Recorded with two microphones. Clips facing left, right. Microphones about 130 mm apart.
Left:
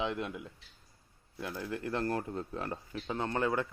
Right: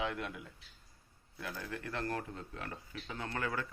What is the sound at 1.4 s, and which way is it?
Speech, 25° left (ahead or behind).